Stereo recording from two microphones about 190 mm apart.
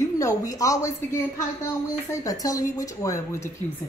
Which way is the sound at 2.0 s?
20° left (ahead or behind).